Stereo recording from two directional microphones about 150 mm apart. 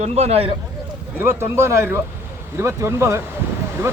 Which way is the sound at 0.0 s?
45° right (ahead or behind).